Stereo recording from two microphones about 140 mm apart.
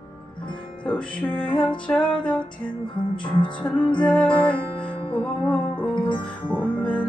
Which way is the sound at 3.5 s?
10° left (ahead or behind).